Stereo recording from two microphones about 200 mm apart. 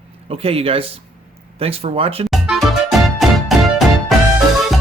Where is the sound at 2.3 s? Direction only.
Centre (ahead or behind).